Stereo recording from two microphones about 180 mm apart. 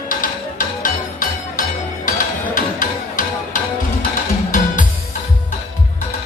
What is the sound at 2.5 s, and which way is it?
Music, 50° left (ahead or behind).